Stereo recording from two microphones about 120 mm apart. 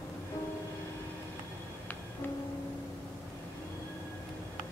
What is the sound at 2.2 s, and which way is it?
Music, 15° left (ahead or behind).